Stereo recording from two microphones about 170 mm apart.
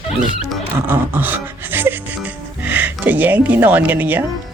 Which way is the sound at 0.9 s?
10° right (ahead or behind).